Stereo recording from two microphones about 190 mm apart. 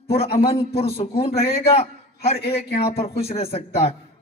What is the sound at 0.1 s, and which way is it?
A man's voice, 30° left (ahead or behind).